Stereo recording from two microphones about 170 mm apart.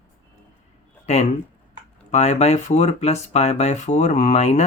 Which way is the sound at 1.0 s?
40° left (ahead or behind).